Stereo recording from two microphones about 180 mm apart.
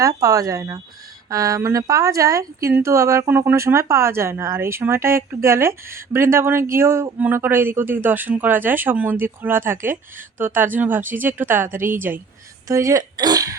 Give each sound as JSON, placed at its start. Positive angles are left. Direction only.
{"t": 0.0, "sound": "speech", "side_deg": -20}